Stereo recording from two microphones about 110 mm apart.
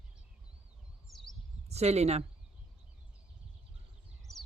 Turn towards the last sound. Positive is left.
turn(degrees=0)  # may be behind; listen again after turning